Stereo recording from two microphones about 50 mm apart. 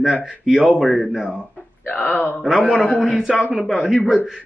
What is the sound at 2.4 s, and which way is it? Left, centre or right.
Speech, centre.